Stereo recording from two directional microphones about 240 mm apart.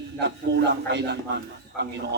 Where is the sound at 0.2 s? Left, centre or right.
Right.